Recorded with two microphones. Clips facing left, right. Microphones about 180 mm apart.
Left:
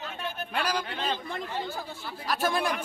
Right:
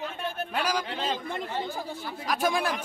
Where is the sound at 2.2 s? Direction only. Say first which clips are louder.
Right 1 dB; centre (ahead or behind).